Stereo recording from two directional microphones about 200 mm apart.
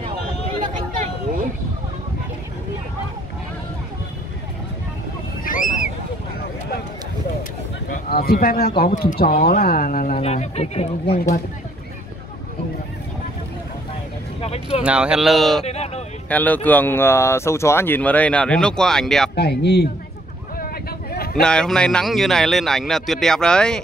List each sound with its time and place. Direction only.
5.4 s a sound: 40° left (ahead or behind)
7.9 s speech: 50° left (ahead or behind); by 11.1 s 30° left (ahead or behind)
14.4 s vehicle: 30° left (ahead or behind)
14.8 s speech: 5° right (ahead or behind)
15.6 s a sound: 30° left (ahead or behind)
16.3 s speech: 10° left (ahead or behind)
19.3 s speech: 55° left (ahead or behind)
21.4 s speech: 5° left (ahead or behind)